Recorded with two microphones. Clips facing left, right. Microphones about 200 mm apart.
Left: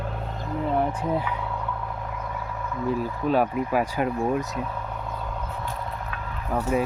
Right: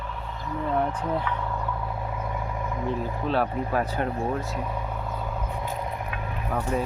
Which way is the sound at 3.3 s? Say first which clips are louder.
Left 3 dB; 10° left (ahead or behind).